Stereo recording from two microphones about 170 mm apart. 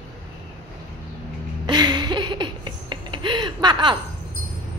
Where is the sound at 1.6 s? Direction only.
25° right (ahead or behind).